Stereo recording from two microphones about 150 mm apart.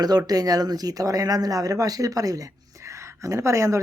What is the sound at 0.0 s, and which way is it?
Speech, 25° right (ahead or behind).